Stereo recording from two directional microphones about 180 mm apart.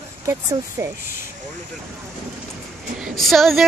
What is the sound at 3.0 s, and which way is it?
Speech, centre (ahead or behind).